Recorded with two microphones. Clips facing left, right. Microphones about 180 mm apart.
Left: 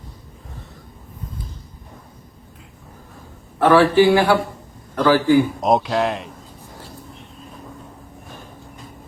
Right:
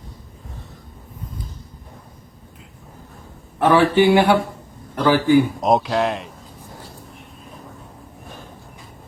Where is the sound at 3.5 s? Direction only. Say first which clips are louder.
Left 2 dB; 20° right (ahead or behind).